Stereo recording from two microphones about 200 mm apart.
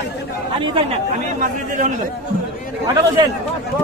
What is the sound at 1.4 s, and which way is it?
Speech, 40° right (ahead or behind).